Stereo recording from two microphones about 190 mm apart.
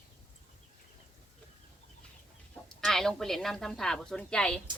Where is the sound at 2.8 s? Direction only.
Centre (ahead or behind).